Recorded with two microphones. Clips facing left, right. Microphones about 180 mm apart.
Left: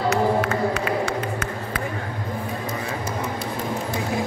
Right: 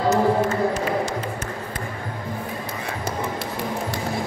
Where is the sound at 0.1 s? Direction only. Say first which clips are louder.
Right 2 dB; 65° left (ahead or behind).